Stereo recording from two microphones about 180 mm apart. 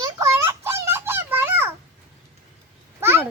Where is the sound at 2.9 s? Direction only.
10° right (ahead or behind).